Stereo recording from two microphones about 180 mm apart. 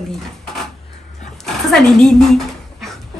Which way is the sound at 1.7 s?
5° left (ahead or behind).